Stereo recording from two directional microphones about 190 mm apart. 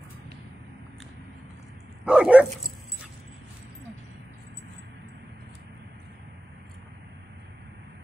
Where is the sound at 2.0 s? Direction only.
5° right (ahead or behind).